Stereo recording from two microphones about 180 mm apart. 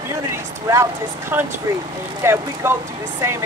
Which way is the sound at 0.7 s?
15° right (ahead or behind).